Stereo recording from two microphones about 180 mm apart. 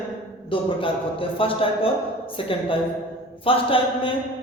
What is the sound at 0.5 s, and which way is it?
A man's voice, 30° left (ahead or behind).